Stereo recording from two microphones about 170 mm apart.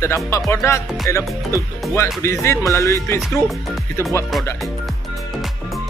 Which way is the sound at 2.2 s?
15° left (ahead or behind).